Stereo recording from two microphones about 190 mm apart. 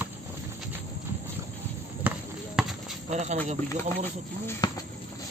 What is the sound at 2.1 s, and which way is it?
Basketball bounce, 10° right (ahead or behind).